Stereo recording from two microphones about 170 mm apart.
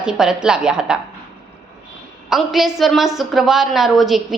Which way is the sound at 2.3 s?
Centre (ahead or behind).